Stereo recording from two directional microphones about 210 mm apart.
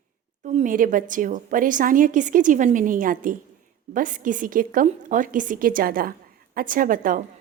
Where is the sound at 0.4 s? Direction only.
35° right (ahead or behind).